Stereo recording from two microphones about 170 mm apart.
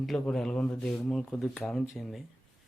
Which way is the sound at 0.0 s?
Centre (ahead or behind).